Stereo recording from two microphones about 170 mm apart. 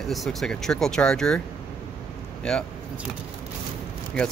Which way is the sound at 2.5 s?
5° left (ahead or behind).